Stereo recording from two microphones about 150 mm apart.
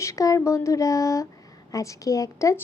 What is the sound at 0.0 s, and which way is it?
A woman's voice, 20° left (ahead or behind).